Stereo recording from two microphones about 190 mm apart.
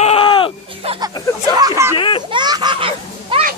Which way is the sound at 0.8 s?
25° right (ahead or behind).